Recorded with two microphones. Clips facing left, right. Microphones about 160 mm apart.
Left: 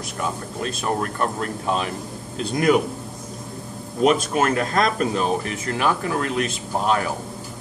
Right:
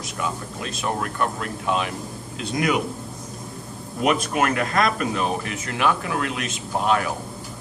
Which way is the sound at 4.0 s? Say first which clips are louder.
Left 3 dB; 35° left (ahead or behind).